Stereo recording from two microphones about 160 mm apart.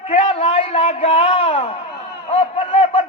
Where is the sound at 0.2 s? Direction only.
35° left (ahead or behind).